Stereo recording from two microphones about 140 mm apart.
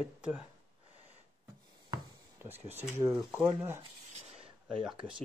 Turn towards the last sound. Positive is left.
turn(degrees=-5)  # may be behind; listen again after turning